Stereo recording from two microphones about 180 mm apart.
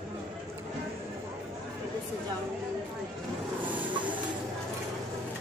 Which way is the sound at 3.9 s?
25° right (ahead or behind).